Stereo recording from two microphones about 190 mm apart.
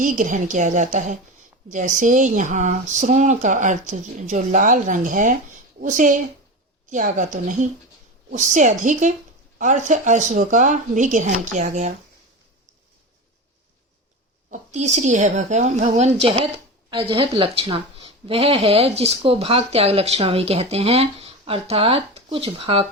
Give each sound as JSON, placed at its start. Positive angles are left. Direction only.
{"t": 0.0, "sound": "a woman's voice", "side_deg": -45}
{"t": 14.5, "sound": "speech", "side_deg": -40}